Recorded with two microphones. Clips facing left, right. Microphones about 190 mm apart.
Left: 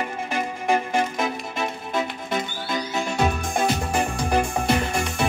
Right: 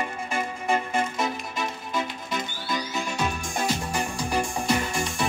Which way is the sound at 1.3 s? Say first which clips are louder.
Left 3 dB; 55° left (ahead or behind).